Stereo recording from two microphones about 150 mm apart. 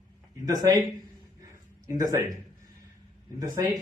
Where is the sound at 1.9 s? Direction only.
20° right (ahead or behind).